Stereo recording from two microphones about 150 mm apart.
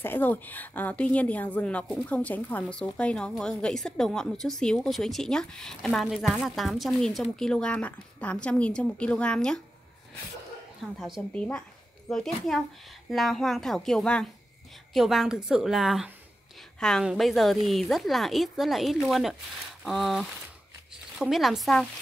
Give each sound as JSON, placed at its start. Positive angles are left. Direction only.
{"t": 0.0, "sound": "a woman's voice", "side_deg": 15}
{"t": 10.8, "sound": "a woman's voice", "side_deg": -5}